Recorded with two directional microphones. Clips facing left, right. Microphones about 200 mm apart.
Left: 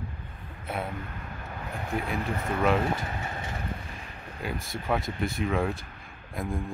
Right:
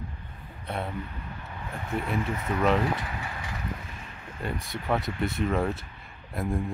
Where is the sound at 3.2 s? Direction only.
25° left (ahead or behind).